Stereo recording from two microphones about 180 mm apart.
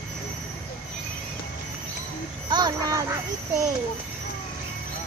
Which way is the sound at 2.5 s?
20° right (ahead or behind).